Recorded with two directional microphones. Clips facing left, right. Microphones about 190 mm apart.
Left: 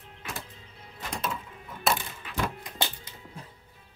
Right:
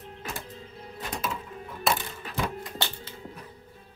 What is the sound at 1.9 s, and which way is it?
Typewriter, centre (ahead or behind).